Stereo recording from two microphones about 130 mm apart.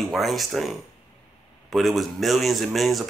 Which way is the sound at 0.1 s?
Centre (ahead or behind).